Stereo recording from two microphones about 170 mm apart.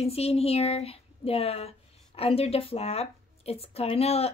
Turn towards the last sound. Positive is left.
turn(degrees=35)  # may be behind; listen again after turning